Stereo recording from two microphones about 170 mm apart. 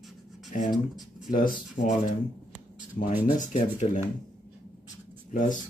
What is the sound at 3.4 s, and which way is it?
Speech, 45° left (ahead or behind).